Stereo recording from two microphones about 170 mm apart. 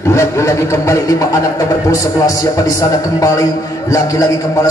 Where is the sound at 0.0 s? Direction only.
15° left (ahead or behind).